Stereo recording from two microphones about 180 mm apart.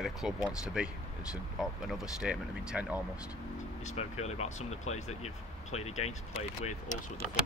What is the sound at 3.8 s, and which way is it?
Speech, 35° left (ahead or behind).